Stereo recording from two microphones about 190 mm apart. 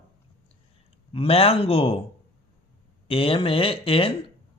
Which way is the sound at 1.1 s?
30° left (ahead or behind).